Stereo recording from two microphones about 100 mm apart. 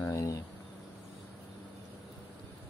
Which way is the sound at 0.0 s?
30° left (ahead or behind).